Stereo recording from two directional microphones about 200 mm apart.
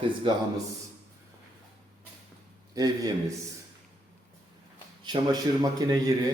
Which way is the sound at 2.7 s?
20° right (ahead or behind).